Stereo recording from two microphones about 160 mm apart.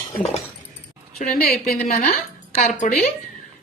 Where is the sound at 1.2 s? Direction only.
70° left (ahead or behind).